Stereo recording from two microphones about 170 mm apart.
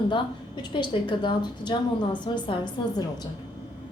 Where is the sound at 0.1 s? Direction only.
25° left (ahead or behind).